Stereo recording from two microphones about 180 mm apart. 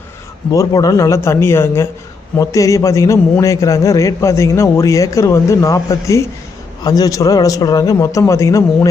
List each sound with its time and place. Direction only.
0.5 s a man's voice: 20° left (ahead or behind)